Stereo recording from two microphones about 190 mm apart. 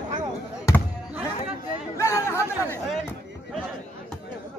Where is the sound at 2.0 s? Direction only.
15° left (ahead or behind).